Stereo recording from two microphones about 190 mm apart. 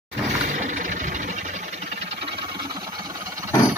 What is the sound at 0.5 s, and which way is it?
Engine, 40° right (ahead or behind).